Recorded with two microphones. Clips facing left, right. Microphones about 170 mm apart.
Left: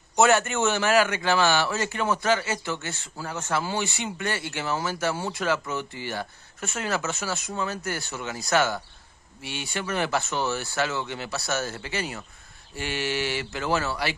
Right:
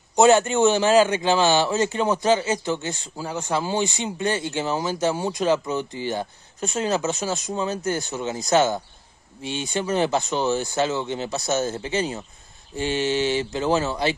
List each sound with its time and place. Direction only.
0.2 s a man's voice: 20° right (ahead or behind)